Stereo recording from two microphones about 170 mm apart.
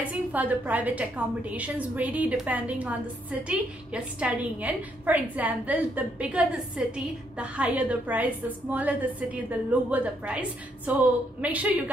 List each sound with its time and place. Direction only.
0.0 s a woman's voice: 10° right (ahead or behind)